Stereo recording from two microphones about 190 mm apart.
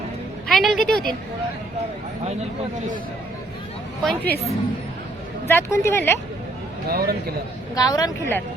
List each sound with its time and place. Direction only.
0.4 s a woman's voice: centre (ahead or behind)
4.0 s a woman's voice: centre (ahead or behind)
5.5 s a woman's voice: 15° left (ahead or behind)
6.8 s speech: 55° right (ahead or behind)
7.8 s speech: 20° left (ahead or behind)